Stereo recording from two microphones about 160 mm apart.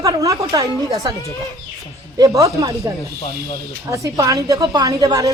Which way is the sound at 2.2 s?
20° right (ahead or behind).